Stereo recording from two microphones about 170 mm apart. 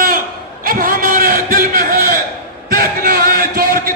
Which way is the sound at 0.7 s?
55° right (ahead or behind).